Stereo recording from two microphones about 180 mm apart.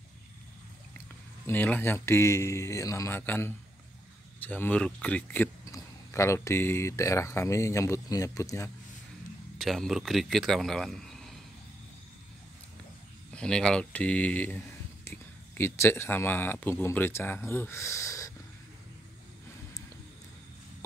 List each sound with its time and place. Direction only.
1.5 s speech: 10° left (ahead or behind)
9.6 s speech: centre (ahead or behind)
13.3 s speech: 5° left (ahead or behind)